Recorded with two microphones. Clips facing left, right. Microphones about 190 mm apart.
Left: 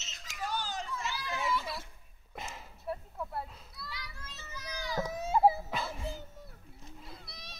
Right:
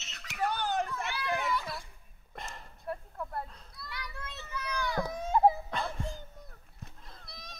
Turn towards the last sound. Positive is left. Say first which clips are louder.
# left 1 dB
turn(degrees=0)  # may be behind; listen again after turning